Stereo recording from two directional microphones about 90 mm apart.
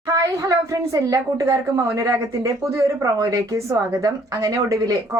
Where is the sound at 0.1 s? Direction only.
40° right (ahead or behind).